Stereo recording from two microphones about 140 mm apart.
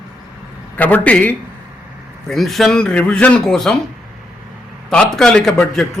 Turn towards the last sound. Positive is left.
turn(degrees=5)  # may be behind; listen again after turning